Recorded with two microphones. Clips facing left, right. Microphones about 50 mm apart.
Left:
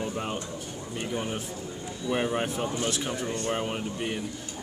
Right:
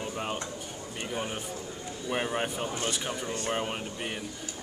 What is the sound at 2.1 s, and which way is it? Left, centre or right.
Speech, centre.